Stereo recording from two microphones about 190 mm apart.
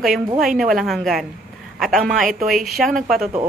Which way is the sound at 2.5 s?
Centre (ahead or behind).